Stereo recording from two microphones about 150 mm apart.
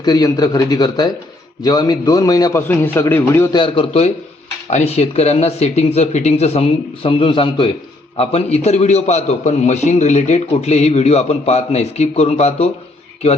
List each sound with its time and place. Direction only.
0.0 s a man's voice: 25° left (ahead or behind)
3.5 s a man's voice: 35° left (ahead or behind)